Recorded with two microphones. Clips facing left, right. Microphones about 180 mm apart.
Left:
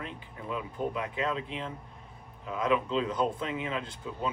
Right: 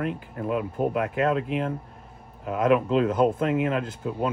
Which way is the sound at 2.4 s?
55° right (ahead or behind).